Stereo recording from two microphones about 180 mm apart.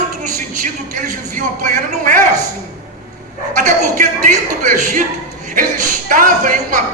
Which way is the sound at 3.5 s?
40° right (ahead or behind).